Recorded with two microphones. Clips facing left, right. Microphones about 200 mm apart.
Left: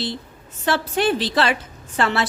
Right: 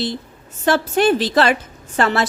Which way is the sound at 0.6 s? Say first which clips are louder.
Right 5 dB; 45° right (ahead or behind).